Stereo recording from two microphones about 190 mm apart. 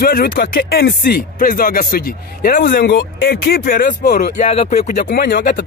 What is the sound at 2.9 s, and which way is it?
Speech, 65° left (ahead or behind).